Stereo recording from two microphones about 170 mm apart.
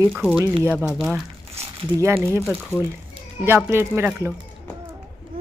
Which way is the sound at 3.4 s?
15° right (ahead or behind).